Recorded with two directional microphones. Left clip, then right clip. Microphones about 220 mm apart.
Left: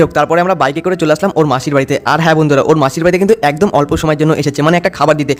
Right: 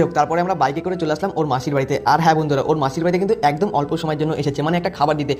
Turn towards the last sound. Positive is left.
turn(degrees=50)  # may be behind; listen again after turning